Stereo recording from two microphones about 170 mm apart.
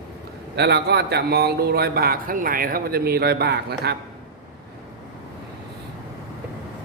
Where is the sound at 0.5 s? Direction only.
75° right (ahead or behind).